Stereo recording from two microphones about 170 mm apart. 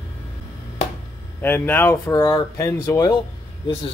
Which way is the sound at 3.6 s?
30° left (ahead or behind).